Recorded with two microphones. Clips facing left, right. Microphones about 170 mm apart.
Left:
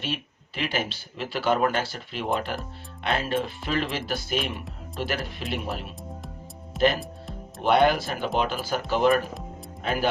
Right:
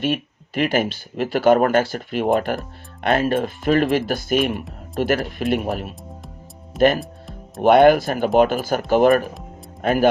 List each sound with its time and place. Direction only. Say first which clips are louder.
0.0 s speech: right 10 dB; 50° right (ahead or behind)
7.0 s music: right 1 dB; centre (ahead or behind)
7.6 s speech: right 8 dB; 50° right (ahead or behind)